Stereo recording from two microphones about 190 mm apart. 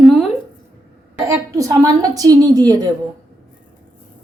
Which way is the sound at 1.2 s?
15° right (ahead or behind).